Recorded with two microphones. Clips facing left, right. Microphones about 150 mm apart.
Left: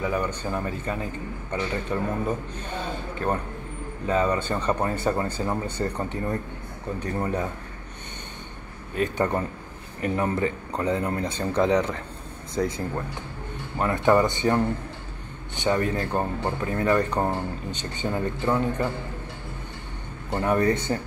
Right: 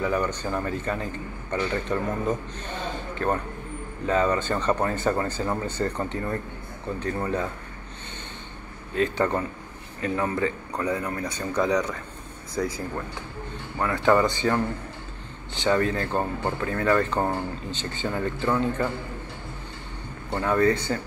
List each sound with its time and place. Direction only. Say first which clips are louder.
0.0 s speech: right 1 dB; 10° left (ahead or behind)
4.1 s speech: right 1 dB; 10° left (ahead or behind)
8.9 s a man's voice: right 1 dB; 15° left (ahead or behind)
20.2 s a man's voice: even; 20° left (ahead or behind)